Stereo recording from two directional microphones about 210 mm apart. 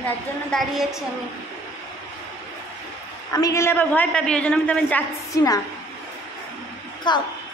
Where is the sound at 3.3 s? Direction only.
15° left (ahead or behind).